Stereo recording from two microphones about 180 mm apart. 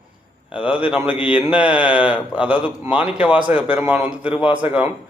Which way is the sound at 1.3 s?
5° right (ahead or behind).